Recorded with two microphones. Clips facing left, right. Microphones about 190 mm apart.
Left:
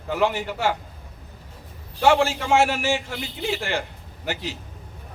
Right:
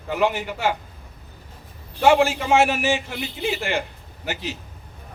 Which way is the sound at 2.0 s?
15° right (ahead or behind).